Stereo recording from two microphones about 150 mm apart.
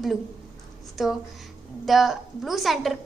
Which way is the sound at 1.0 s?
Centre (ahead or behind).